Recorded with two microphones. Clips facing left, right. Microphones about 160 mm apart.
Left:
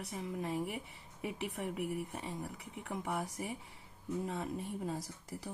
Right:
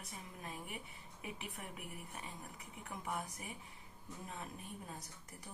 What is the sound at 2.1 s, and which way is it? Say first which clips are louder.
Speech: left 8 dB; 30° left (ahead or behind).